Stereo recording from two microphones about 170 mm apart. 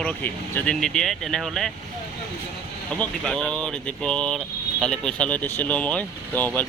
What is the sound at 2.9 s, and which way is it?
Speech, 5° left (ahead or behind).